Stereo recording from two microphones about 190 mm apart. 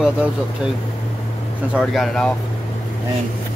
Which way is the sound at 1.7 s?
Centre (ahead or behind).